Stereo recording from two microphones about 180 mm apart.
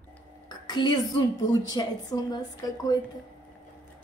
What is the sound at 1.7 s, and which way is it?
A woman's voice, 20° left (ahead or behind).